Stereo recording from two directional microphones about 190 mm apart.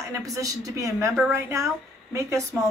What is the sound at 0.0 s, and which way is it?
A woman's voice, 15° right (ahead or behind).